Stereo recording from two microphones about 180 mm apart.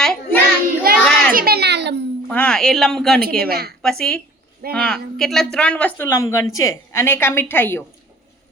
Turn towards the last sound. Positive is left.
turn(degrees=10)  # may be behind; listen again after turning